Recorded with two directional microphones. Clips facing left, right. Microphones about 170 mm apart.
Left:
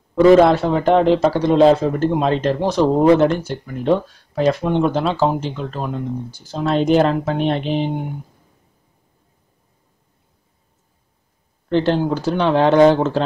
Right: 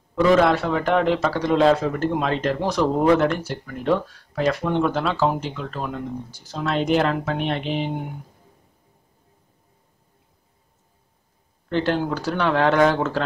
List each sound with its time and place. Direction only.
0.1 s a man's voice: 30° left (ahead or behind)
11.7 s a man's voice: 25° left (ahead or behind)